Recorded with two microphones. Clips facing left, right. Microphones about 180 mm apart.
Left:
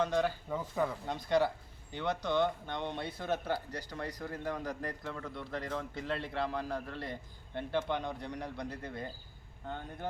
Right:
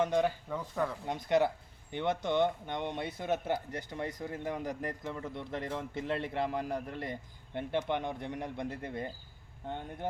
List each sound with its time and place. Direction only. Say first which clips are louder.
0.0 s speech: right 2 dB; 20° right (ahead or behind)
0.4 s speech: left 1 dB; 5° left (ahead or behind)
1.0 s speech: right 3 dB; 20° right (ahead or behind)